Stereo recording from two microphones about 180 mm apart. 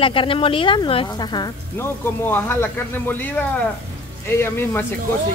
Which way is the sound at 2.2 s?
10° left (ahead or behind).